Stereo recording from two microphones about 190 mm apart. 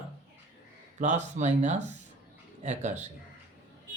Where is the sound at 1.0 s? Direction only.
40° right (ahead or behind).